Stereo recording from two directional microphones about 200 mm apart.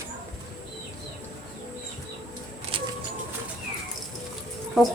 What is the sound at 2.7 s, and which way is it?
Bird, 25° right (ahead or behind).